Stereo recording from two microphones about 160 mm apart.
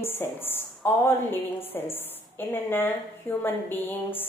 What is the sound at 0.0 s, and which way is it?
A woman's voice, 15° left (ahead or behind).